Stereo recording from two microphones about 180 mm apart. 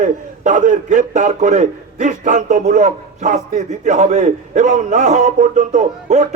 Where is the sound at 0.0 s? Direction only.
45° right (ahead or behind).